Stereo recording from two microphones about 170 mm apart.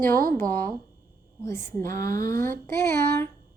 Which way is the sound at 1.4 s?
15° left (ahead or behind).